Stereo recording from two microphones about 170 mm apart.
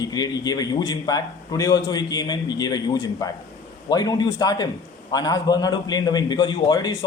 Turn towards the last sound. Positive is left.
turn(degrees=25)  # may be behind; listen again after turning